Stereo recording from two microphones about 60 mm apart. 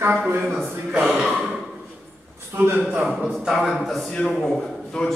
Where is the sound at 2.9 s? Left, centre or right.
Centre.